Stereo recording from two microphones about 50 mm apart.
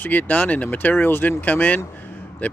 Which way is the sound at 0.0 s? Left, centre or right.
Left.